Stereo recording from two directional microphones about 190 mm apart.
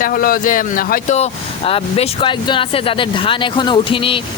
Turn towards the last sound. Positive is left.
turn(degrees=30)  # may be behind; listen again after turning